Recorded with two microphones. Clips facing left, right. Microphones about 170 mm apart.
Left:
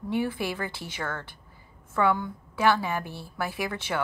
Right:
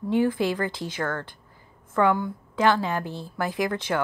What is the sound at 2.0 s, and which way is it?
A woman's voice, 15° right (ahead or behind).